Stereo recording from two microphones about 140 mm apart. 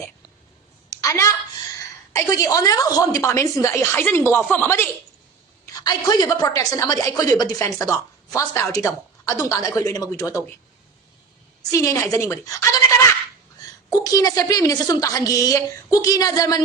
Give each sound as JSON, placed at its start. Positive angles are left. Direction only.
{"t": 0.9, "sound": "a sound", "side_deg": 20}
{"t": 2.1, "sound": "a woman's voice", "side_deg": 25}
{"t": 5.6, "sound": "a woman's voice", "side_deg": 30}
{"t": 11.7, "sound": "a woman's voice", "side_deg": 20}
{"t": 13.9, "sound": "a woman's voice", "side_deg": 25}